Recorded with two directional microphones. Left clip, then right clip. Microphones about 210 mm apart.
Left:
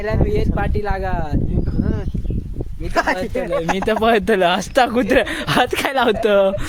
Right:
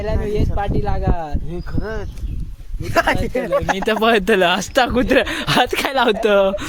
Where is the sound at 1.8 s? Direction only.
30° right (ahead or behind).